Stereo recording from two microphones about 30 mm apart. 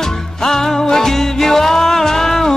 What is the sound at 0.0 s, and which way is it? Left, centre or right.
Music, centre.